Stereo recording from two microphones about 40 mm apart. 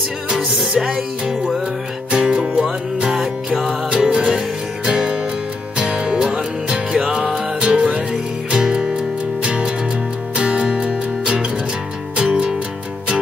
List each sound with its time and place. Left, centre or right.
0.7 s music: centre